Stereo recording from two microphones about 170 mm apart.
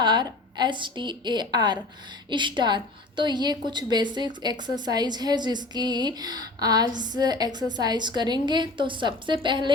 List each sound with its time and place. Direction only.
0.0 s a woman's voice: 25° right (ahead or behind)